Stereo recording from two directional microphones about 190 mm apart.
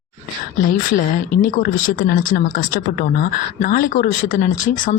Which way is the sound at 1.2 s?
45° left (ahead or behind).